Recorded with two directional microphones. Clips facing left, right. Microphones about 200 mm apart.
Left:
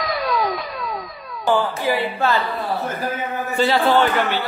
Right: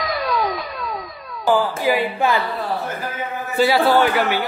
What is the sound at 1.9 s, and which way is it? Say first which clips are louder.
Speech: right 2 dB; 15° right (ahead or behind).